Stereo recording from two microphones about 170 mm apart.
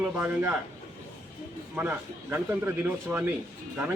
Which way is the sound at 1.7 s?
10° right (ahead or behind).